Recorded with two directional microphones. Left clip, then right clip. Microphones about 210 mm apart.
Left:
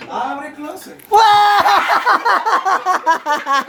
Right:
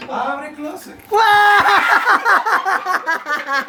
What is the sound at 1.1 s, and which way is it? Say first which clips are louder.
Speech: left 1 dB; 15° left (ahead or behind).